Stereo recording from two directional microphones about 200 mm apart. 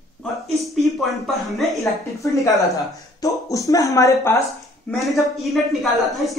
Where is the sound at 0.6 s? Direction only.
Centre (ahead or behind).